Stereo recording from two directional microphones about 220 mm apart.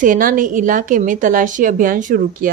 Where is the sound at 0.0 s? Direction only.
35° right (ahead or behind).